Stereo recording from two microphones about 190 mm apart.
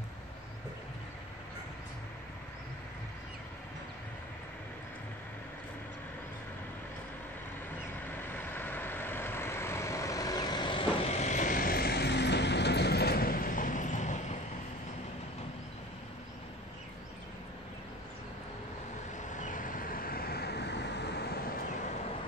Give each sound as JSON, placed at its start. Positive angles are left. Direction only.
{"t": 8.3, "sound": "vehicle", "side_deg": 10}
{"t": 19.3, "sound": "vehicle", "side_deg": 40}